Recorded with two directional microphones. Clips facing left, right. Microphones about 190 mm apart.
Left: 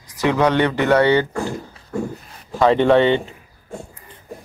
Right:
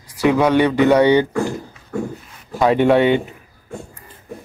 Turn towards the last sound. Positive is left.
turn(degrees=-10)  # may be behind; listen again after turning